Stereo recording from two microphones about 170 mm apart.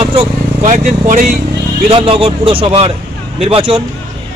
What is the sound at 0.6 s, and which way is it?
Speech, 45° right (ahead or behind).